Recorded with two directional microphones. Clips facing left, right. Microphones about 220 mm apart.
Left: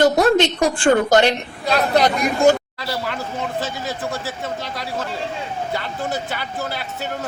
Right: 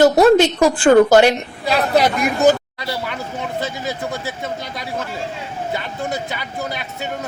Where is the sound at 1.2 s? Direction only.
5° right (ahead or behind).